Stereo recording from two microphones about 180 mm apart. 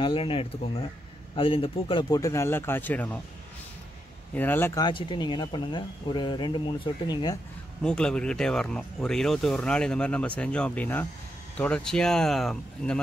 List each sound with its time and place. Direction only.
0.0 s speech: 30° left (ahead or behind); by 3.2 s 10° left (ahead or behind)
4.4 s speech: 10° left (ahead or behind)
4.8 s speech: 25° left (ahead or behind)
7.8 s speech: 5° left (ahead or behind)